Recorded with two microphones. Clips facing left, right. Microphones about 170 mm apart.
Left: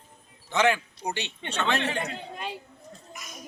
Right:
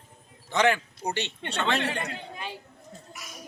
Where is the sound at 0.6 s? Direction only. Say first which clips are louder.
Even; 5° left (ahead or behind).